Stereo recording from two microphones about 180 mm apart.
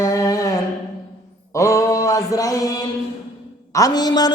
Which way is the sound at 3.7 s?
20° left (ahead or behind).